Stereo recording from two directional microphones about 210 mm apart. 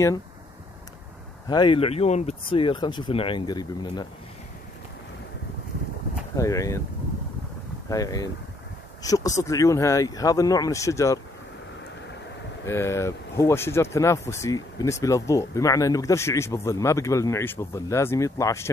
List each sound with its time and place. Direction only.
1.5 s speech: 20° left (ahead or behind)
6.3 s speech: 15° left (ahead or behind)
7.9 s speech: 15° left (ahead or behind)
12.6 s speech: 10° left (ahead or behind)